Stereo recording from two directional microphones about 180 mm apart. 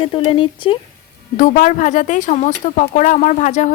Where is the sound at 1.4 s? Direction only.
45° left (ahead or behind).